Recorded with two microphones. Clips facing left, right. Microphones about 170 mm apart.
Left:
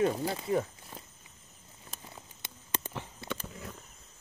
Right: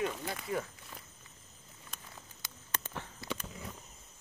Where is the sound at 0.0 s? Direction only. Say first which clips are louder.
Left 7 dB; 35° left (ahead or behind).